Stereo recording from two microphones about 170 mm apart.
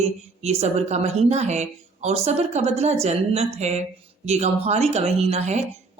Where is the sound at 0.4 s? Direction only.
40° right (ahead or behind).